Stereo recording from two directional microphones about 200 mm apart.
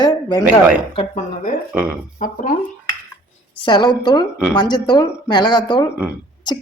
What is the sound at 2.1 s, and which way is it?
Speech, 40° left (ahead or behind).